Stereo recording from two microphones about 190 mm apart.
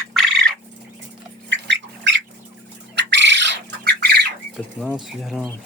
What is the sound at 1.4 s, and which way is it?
Cat, 70° right (ahead or behind).